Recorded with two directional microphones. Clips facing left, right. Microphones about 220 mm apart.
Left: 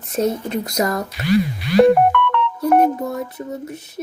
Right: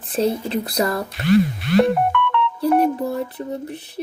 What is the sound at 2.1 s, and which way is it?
Music, 50° left (ahead or behind).